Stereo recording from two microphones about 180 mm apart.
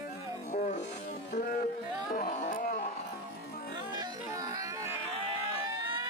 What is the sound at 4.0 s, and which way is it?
Music, 20° right (ahead or behind).